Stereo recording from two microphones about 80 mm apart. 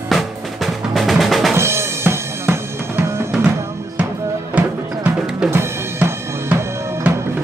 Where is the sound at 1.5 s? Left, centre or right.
Right.